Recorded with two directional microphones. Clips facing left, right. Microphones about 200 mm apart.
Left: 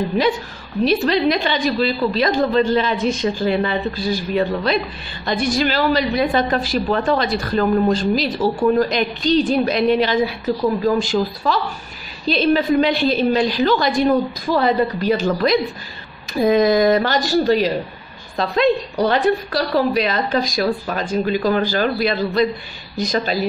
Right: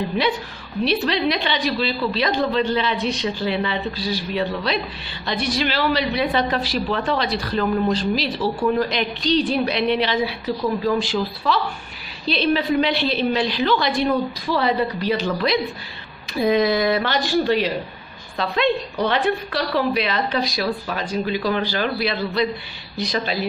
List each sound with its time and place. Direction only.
0.8 s a woman's voice: 45° left (ahead or behind)